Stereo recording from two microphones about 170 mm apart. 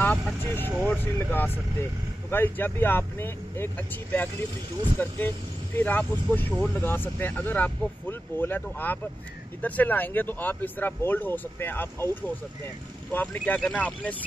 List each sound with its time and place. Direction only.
0.0 s vehicle: 5° left (ahead or behind)
0.8 s speech: 10° left (ahead or behind)